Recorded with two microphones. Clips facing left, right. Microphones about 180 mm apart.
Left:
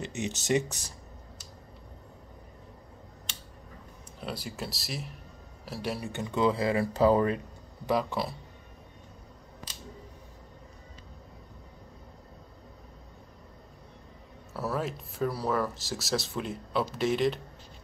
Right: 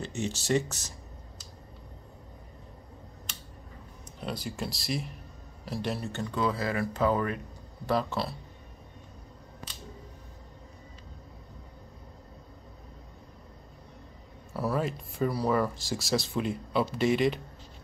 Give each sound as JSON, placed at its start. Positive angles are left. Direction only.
{"t": 0.0, "sound": "speech", "side_deg": 20}
{"t": 4.2, "sound": "speech", "side_deg": 5}
{"t": 7.9, "sound": "speech", "side_deg": 15}
{"t": 14.5, "sound": "speech", "side_deg": 0}